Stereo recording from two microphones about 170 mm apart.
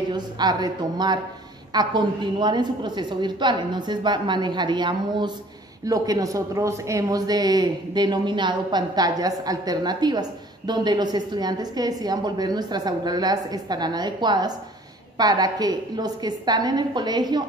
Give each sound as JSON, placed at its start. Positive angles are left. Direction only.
{"t": 0.1, "sound": "speech", "side_deg": -25}